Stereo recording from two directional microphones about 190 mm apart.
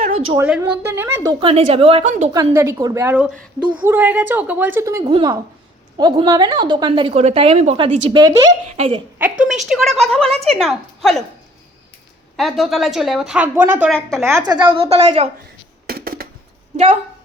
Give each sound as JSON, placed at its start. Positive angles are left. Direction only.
{"t": 0.3, "sound": "a woman's voice", "side_deg": -10}
{"t": 2.3, "sound": "a woman's voice", "side_deg": -15}
{"t": 7.1, "sound": "a woman's voice", "side_deg": -35}
{"t": 8.7, "sound": "a woman's voice", "side_deg": -30}
{"t": 9.4, "sound": "a woman's voice", "side_deg": -5}
{"t": 12.4, "sound": "a woman's voice", "side_deg": 0}
{"t": 14.3, "sound": "a woman's voice", "side_deg": -15}
{"t": 15.9, "sound": "a sound", "side_deg": -50}
{"t": 16.7, "sound": "speech", "side_deg": -35}